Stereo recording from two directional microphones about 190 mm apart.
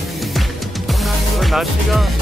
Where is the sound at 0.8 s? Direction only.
Centre (ahead or behind).